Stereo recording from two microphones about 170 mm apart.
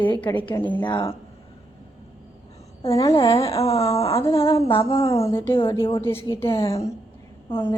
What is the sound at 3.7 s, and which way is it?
Speech, 20° left (ahead or behind).